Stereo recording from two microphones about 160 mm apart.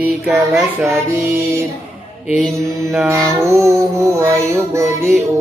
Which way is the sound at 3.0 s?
15° right (ahead or behind).